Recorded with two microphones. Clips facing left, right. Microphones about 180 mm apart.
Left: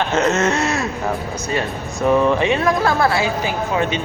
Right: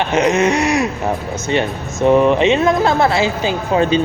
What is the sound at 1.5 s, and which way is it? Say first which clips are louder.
Speech: right 5 dB; 25° right (ahead or behind).